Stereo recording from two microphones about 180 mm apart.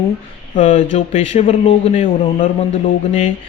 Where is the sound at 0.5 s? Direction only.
45° left (ahead or behind).